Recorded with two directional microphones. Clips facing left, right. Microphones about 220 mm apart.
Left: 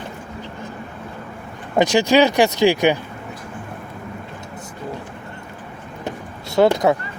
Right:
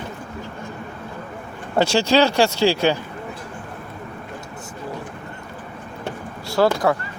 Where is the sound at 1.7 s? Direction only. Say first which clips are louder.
Left 2 dB; 15° left (ahead or behind).